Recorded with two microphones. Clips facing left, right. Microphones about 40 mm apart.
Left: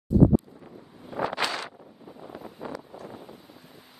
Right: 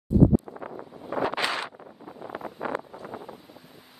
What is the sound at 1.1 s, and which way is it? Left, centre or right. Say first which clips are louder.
Wind noise: right 2 dB; right.